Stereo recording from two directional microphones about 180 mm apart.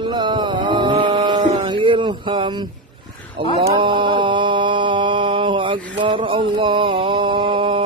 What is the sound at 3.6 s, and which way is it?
Mantra, 25° right (ahead or behind).